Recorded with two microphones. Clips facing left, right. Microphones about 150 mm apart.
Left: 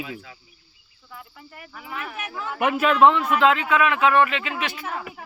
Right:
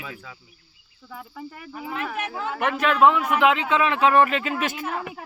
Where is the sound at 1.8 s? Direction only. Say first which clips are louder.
Right 4 dB; 35° right (ahead or behind).